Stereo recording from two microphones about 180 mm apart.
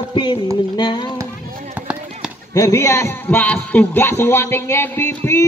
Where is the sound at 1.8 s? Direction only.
5° right (ahead or behind).